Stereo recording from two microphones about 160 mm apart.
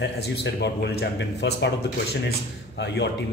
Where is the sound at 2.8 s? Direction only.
90° left.